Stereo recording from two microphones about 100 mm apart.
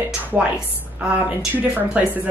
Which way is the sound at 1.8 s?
15° right (ahead or behind).